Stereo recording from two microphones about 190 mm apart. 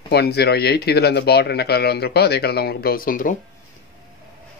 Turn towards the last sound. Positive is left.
turn(degrees=45)  # may be behind; listen again after turning